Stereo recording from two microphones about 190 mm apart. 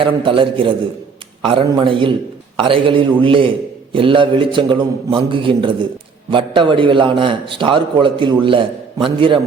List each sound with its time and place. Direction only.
0.0 s a man's voice: 25° right (ahead or behind)